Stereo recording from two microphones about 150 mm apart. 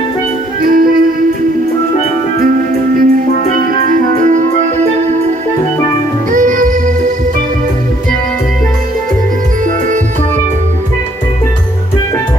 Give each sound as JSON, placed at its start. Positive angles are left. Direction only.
{"t": 0.6, "sound": "music", "side_deg": -75}
{"t": 2.4, "sound": "music", "side_deg": -70}
{"t": 6.3, "sound": "music", "side_deg": -60}